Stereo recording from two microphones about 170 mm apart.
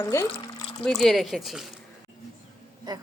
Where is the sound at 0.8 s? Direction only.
Centre (ahead or behind).